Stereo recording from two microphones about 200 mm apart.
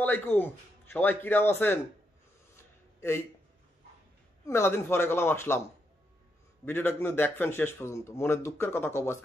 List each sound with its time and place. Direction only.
0.0 s a man's voice: 10° left (ahead or behind)
2.5 s a sound: 10° left (ahead or behind)
4.5 s a man's voice: 10° left (ahead or behind)
6.6 s a man's voice: 10° left (ahead or behind)